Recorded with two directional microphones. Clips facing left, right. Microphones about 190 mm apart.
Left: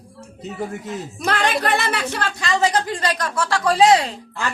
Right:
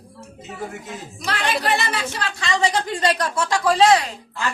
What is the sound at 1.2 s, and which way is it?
Speech, 55° left (ahead or behind).